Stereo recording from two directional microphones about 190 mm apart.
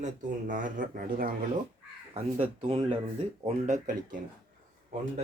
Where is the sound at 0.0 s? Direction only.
40° right (ahead or behind).